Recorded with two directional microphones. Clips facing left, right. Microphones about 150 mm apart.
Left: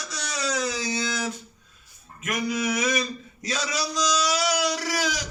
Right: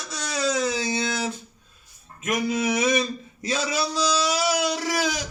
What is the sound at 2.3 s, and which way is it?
Male singing, 25° right (ahead or behind).